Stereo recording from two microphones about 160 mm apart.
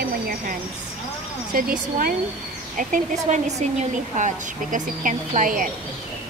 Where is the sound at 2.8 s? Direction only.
50° right (ahead or behind).